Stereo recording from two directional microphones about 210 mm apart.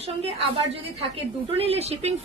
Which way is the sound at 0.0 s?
30° right (ahead or behind).